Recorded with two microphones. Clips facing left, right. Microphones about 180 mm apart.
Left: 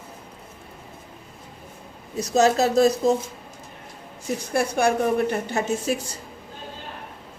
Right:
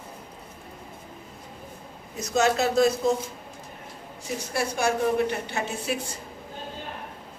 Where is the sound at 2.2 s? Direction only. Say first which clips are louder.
Left 4 dB; 35° left (ahead or behind).